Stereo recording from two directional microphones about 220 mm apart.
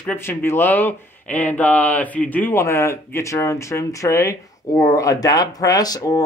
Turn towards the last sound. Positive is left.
turn(degrees=15)  # may be behind; listen again after turning